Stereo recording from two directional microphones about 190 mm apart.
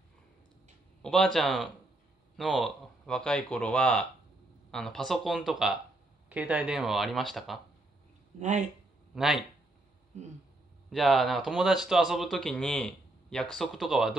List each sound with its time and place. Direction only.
1.0 s speech: centre (ahead or behind)
8.4 s speech: 40° right (ahead or behind)
9.1 s speech: centre (ahead or behind)
10.9 s speech: centre (ahead or behind)